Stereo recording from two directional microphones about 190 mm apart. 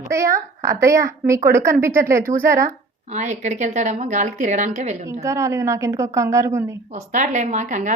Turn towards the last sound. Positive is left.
turn(degrees=-40)  # may be behind; listen again after turning